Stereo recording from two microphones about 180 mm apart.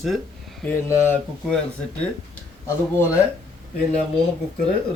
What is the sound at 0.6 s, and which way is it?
Speech, 10° left (ahead or behind).